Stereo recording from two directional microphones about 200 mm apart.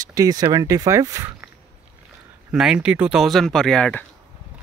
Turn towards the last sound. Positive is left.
turn(degrees=5)  # may be behind; listen again after turning